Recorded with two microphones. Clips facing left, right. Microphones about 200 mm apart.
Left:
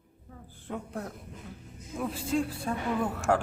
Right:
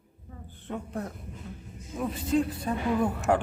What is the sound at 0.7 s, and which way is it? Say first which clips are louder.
Speech: right 2 dB; centre (ahead or behind).